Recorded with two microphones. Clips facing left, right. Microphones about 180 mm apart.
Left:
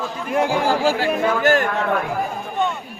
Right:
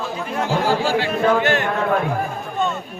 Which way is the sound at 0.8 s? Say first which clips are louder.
Even; 45° left (ahead or behind).